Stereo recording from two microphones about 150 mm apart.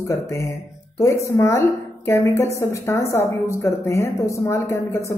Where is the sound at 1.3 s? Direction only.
20° left (ahead or behind).